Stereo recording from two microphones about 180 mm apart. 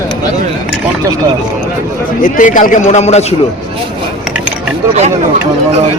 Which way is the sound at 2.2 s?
45° left (ahead or behind).